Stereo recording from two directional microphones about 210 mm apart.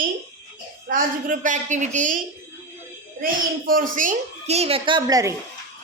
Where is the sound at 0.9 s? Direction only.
40° right (ahead or behind).